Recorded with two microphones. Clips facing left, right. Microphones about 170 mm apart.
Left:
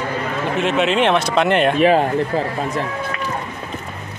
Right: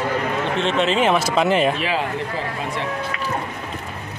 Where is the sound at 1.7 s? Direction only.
45° left (ahead or behind).